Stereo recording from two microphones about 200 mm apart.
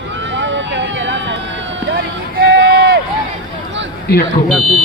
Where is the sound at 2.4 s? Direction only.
50° right (ahead or behind).